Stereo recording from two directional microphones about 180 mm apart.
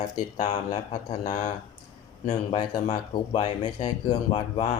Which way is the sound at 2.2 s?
35° left (ahead or behind).